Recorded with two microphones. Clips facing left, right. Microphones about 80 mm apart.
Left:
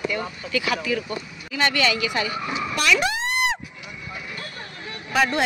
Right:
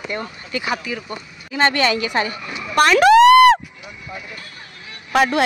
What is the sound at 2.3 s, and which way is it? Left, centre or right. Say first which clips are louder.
Speech: left 3 dB; left.